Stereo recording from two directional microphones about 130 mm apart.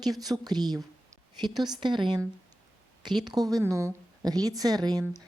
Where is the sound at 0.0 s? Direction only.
30° right (ahead or behind).